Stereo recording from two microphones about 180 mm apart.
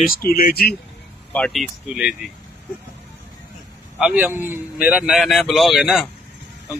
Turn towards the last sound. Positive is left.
turn(degrees=0)  # may be behind; listen again after turning